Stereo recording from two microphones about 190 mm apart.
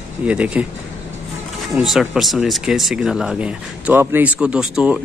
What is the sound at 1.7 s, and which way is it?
Speech, centre (ahead or behind).